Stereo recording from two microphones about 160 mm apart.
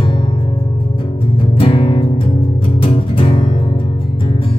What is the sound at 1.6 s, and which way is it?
Music, 35° left (ahead or behind).